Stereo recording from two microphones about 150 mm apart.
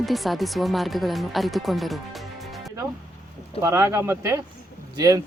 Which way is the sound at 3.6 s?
20° right (ahead or behind).